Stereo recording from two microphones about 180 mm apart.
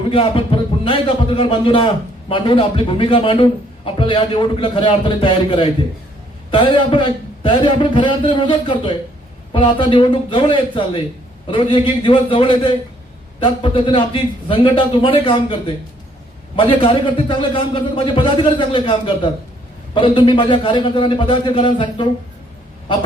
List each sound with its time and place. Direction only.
0.0 s a man's voice: 30° left (ahead or behind)